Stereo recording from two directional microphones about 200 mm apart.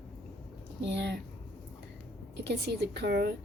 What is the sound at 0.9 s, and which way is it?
Speech, 60° right (ahead or behind).